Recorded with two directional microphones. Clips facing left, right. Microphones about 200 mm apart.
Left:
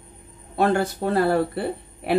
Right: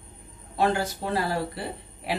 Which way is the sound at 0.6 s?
55° left (ahead or behind).